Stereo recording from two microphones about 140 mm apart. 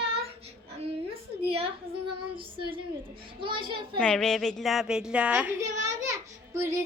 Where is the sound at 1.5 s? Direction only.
45° right (ahead or behind).